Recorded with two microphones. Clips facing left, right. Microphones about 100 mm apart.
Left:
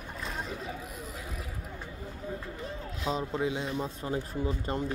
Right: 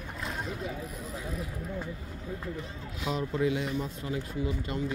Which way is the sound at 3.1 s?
25° left (ahead or behind).